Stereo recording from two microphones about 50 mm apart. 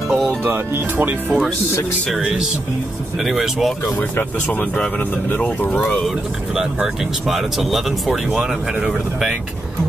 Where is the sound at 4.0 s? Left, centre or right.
Left.